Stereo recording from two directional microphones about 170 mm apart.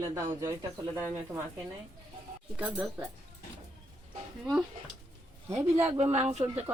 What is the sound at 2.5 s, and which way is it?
Speech, 10° right (ahead or behind).